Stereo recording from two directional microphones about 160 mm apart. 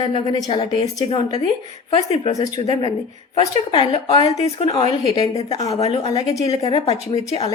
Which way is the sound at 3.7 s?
30° left (ahead or behind).